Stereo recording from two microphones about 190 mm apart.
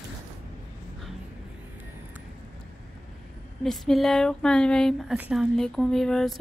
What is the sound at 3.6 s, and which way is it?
Speech, centre (ahead or behind).